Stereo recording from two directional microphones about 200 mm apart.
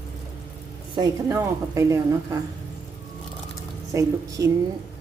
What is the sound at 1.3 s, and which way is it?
Speech, 15° right (ahead or behind).